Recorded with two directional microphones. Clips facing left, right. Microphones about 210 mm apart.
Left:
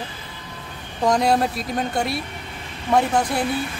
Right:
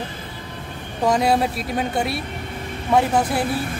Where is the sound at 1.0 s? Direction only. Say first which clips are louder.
Even; 5° right (ahead or behind).